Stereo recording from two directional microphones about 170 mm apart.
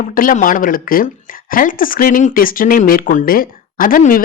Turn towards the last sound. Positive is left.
turn(degrees=55)  # may be behind; listen again after turning